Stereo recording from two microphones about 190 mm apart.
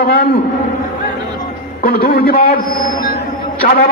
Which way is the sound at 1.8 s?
50° left (ahead or behind).